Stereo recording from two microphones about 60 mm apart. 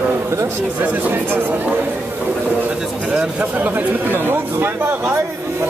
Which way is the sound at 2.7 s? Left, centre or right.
Centre.